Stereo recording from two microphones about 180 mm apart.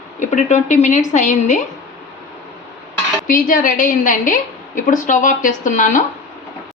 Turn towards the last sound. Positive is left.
turn(degrees=45)  # may be behind; listen again after turning